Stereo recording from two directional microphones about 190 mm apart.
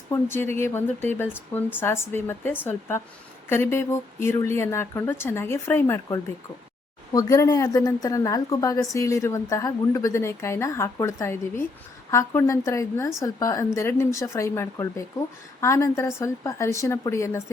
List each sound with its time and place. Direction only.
0.1 s speech: 10° left (ahead or behind)